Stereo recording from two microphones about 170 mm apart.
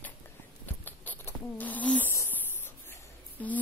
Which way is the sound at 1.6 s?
10° left (ahead or behind).